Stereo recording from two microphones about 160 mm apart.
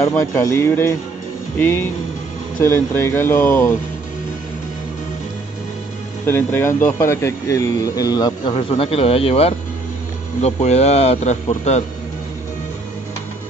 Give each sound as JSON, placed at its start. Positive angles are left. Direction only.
{"t": 0.0, "sound": "speech", "side_deg": 15}
{"t": 6.2, "sound": "speech", "side_deg": 15}
{"t": 8.5, "sound": "speech", "side_deg": 35}